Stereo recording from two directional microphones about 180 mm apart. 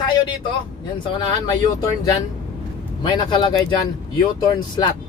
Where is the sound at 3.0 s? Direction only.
25° left (ahead or behind).